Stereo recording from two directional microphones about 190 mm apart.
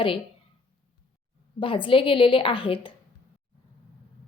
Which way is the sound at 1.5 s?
25° left (ahead or behind).